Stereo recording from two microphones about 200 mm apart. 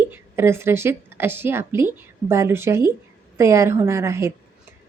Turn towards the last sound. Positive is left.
turn(degrees=-15)  # may be behind; listen again after turning